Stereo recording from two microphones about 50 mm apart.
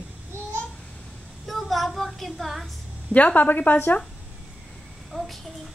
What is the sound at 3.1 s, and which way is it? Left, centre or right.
Speech, left.